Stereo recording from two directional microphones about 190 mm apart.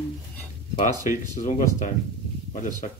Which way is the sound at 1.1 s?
40° left (ahead or behind).